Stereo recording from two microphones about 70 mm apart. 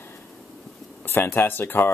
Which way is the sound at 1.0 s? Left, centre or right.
Left.